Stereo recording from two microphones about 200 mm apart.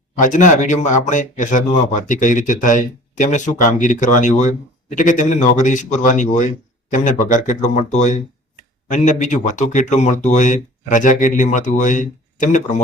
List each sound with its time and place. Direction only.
0.2 s speech: 40° left (ahead or behind)